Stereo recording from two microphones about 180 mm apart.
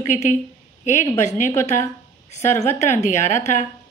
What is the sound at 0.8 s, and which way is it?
Speech, 40° left (ahead or behind).